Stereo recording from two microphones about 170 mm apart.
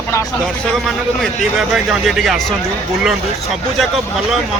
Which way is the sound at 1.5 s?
5° right (ahead or behind).